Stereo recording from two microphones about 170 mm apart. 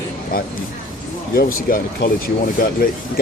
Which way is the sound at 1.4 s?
60° left (ahead or behind).